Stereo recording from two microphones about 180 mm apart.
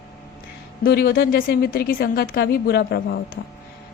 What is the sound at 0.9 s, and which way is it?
Speech, 60° left (ahead or behind).